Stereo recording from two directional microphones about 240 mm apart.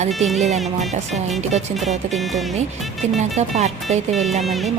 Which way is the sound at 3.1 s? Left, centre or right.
Right.